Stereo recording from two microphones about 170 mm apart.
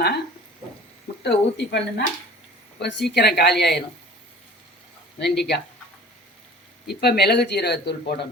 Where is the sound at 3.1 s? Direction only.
75° left (ahead or behind).